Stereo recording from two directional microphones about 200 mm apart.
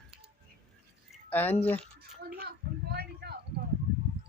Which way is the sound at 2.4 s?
55° right (ahead or behind).